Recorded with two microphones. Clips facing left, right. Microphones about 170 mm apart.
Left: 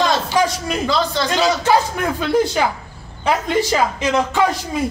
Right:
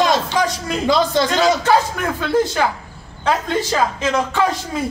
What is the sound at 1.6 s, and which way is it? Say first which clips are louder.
Speech: even; 15° left (ahead or behind).